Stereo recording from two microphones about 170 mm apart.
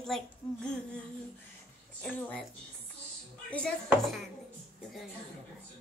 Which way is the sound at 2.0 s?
10° left (ahead or behind).